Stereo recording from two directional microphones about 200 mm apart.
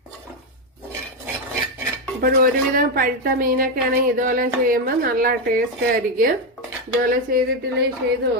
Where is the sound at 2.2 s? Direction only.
45° right (ahead or behind).